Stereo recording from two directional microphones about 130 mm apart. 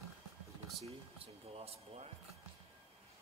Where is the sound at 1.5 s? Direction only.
50° right (ahead or behind).